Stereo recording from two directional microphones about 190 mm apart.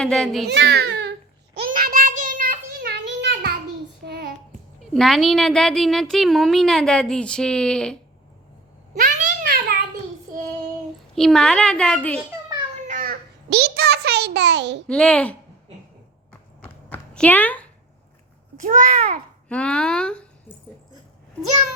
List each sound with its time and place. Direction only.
0.0 s a woman's voice: 5° left (ahead or behind)
0.4 s a child's voice: 65° right (ahead or behind)
1.5 s child singing: 50° right (ahead or behind)
4.8 s a woman's voice: centre (ahead or behind)
9.0 s a sound: 45° right (ahead or behind)
11.1 s a woman's voice: centre (ahead or behind)
12.9 s a sound: 50° right (ahead or behind); by 14.8 s 70° right (ahead or behind)
14.8 s a woman's voice: 5° left (ahead or behind)
16.6 s a sound: 5° left (ahead or behind)
18.6 s a child's voice: 45° right (ahead or behind)
19.5 s a woman's voice: 5° left (ahead or behind)